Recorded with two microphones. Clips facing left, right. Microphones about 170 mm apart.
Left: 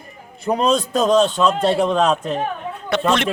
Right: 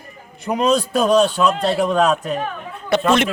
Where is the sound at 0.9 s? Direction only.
25° left (ahead or behind).